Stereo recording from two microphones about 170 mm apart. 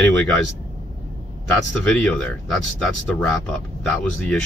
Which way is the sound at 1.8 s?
5° left (ahead or behind).